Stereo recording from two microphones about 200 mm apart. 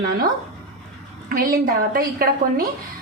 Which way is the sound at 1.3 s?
45° right (ahead or behind).